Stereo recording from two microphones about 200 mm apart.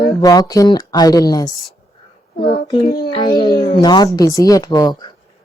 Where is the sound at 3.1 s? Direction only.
20° left (ahead or behind).